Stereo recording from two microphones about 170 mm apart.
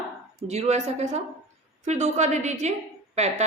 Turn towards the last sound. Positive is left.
turn(degrees=-40)  # may be behind; listen again after turning